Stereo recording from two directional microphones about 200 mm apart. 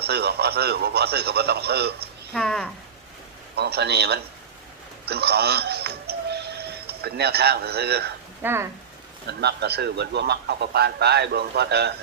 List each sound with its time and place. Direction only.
0.0 s a man's voice: 55° right (ahead or behind)
2.3 s speech: 5° left (ahead or behind)
3.5 s a man's voice: 55° right (ahead or behind)
8.4 s speech: 10° right (ahead or behind)
9.4 s a man's voice: 55° right (ahead or behind)